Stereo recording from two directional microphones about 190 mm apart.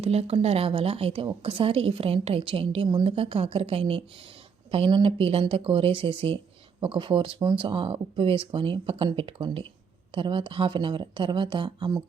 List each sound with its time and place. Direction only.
0.0 s speech: 35° right (ahead or behind)